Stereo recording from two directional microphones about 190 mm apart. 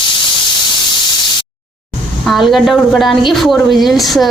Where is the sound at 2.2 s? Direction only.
Centre (ahead or behind).